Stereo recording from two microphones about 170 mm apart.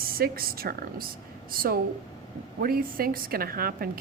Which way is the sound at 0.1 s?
60° right (ahead or behind).